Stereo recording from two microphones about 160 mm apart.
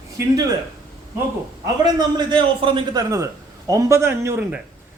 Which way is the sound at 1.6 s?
25° right (ahead or behind).